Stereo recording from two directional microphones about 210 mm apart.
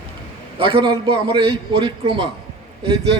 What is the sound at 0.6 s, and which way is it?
A man's voice, 25° right (ahead or behind).